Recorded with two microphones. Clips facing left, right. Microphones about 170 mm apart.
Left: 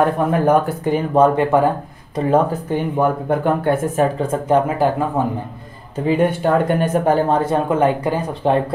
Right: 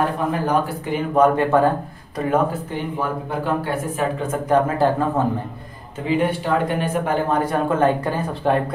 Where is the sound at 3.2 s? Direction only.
55° left (ahead or behind).